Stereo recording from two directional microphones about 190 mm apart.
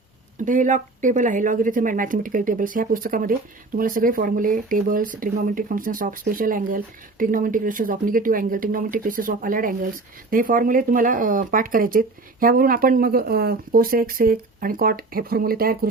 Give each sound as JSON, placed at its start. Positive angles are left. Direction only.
{"t": 0.3, "sound": "speech", "side_deg": -45}